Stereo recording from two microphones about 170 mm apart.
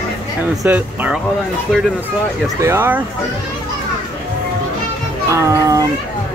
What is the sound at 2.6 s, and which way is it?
Speech, 15° right (ahead or behind).